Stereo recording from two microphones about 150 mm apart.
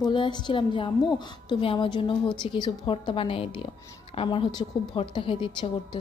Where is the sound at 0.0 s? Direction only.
30° left (ahead or behind).